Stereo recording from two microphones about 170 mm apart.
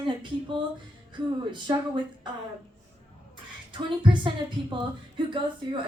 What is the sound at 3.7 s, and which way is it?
A woman's voice, 30° right (ahead or behind).